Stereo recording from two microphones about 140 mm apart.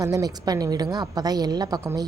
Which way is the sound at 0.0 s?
25° right (ahead or behind).